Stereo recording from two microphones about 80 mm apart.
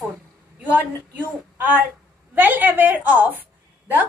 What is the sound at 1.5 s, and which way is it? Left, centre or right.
A woman's voice, centre.